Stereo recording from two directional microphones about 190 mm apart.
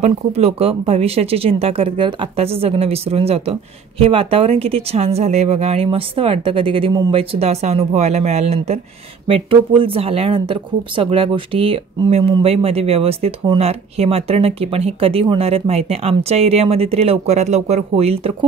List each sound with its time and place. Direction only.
0.0 s speech: 30° right (ahead or behind)